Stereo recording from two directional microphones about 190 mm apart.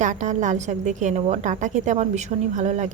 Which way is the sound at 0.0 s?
40° right (ahead or behind).